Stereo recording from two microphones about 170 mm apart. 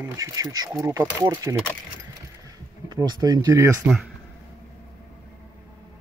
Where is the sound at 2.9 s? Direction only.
25° right (ahead or behind).